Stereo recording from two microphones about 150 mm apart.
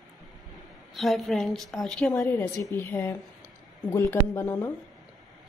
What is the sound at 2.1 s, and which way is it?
A woman's voice, 15° left (ahead or behind).